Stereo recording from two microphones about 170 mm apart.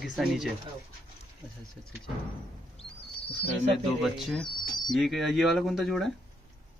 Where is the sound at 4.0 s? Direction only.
Centre (ahead or behind).